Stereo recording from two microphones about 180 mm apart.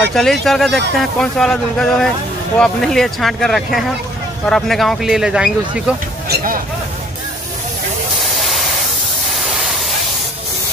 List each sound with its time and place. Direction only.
0.0 s speech: centre (ahead or behind)
6.2 s a sound: 55° right (ahead or behind)
8.4 s hiss: centre (ahead or behind)
9.4 s spray: centre (ahead or behind)